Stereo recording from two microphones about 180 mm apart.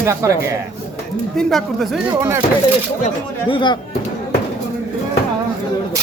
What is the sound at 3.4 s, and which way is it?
Speech, 25° left (ahead or behind).